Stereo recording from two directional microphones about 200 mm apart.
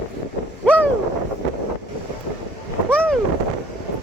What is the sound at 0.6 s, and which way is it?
Wind noise, 5° left (ahead or behind).